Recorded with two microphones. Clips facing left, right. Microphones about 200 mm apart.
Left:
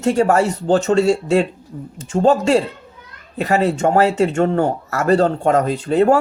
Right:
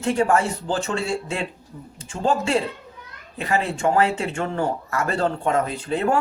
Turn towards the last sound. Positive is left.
turn(degrees=40)  # may be behind; listen again after turning